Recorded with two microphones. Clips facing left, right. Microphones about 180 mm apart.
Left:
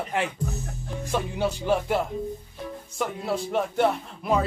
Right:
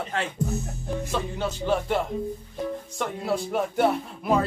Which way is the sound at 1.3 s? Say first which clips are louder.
Left 2 dB; 10° left (ahead or behind).